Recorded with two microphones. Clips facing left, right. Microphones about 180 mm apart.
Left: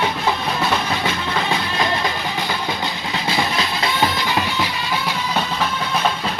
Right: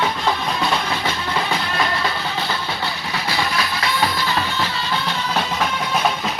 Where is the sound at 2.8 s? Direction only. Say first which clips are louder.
Left 1 dB; 20° left (ahead or behind).